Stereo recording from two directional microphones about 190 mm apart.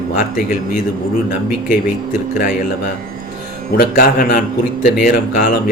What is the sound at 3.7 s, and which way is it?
Speech, 50° left (ahead or behind).